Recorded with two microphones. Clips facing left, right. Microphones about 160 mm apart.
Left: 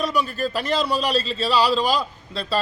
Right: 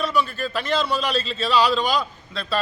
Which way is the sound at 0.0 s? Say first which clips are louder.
Even; 40° left (ahead or behind).